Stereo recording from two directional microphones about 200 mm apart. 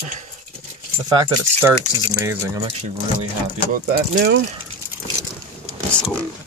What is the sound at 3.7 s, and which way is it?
Speech, 45° right (ahead or behind).